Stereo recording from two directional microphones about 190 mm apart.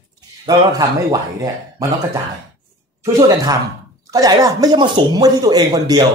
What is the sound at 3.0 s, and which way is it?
Speech, 15° right (ahead or behind).